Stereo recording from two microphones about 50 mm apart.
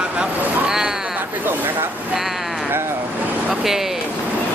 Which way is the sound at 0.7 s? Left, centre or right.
Centre.